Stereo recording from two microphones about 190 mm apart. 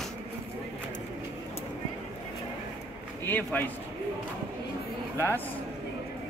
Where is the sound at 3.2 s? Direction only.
10° left (ahead or behind).